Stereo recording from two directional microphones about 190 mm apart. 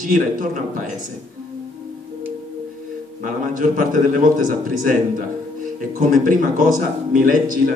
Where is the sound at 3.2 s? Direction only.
45° right (ahead or behind).